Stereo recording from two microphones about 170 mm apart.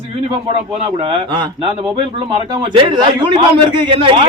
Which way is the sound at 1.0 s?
30° right (ahead or behind).